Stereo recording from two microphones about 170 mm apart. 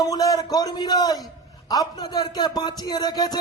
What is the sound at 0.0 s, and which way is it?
Speech, 20° left (ahead or behind).